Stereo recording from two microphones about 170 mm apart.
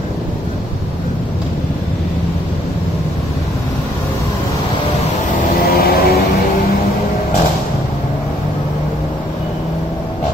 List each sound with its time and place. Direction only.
5.6 s vehicle: 65° left (ahead or behind)